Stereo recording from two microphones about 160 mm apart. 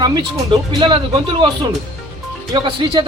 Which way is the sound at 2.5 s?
30° right (ahead or behind).